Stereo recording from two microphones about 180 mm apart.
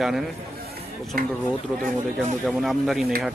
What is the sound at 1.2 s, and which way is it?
Speech, 50° right (ahead or behind).